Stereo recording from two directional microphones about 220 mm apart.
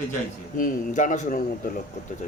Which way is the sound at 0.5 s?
35° left (ahead or behind).